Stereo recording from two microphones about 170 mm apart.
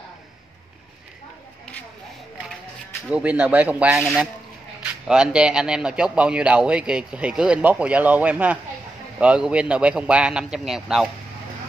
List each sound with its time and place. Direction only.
3.1 s a man's voice: 5° right (ahead or behind)